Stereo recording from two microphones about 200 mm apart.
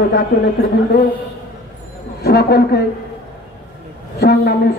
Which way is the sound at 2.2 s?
55° left (ahead or behind).